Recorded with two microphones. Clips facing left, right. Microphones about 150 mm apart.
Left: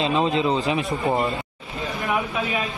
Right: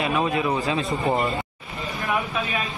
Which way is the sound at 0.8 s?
Centre (ahead or behind).